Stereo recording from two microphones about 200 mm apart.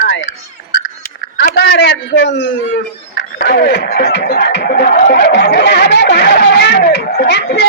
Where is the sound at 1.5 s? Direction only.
55° left (ahead or behind).